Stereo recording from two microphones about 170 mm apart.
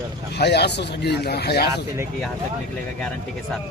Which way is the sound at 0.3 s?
75° left (ahead or behind).